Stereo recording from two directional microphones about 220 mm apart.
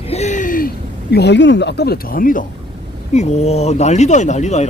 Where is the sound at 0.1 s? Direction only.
30° left (ahead or behind).